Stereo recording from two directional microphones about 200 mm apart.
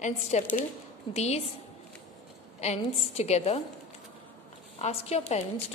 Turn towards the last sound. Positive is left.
turn(degrees=30)  # may be behind; listen again after turning